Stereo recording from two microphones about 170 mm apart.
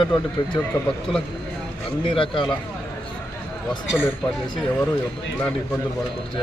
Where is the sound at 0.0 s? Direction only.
25° left (ahead or behind).